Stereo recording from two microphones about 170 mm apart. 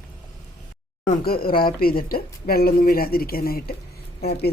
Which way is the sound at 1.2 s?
60° left (ahead or behind).